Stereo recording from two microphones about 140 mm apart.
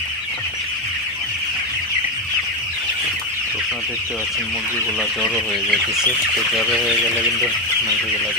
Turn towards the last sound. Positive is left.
turn(degrees=-5)  # may be behind; listen again after turning